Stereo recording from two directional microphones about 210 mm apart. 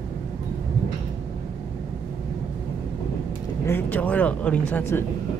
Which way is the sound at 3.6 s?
10° left (ahead or behind).